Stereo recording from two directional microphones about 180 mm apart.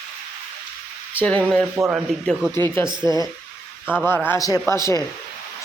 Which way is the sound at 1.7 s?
10° right (ahead or behind).